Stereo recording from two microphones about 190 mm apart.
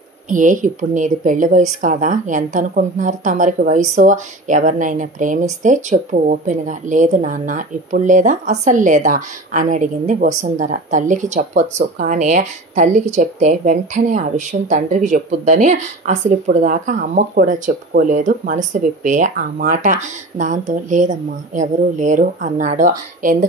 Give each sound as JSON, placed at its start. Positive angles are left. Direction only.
{"t": 0.3, "sound": "a woman's voice", "side_deg": -45}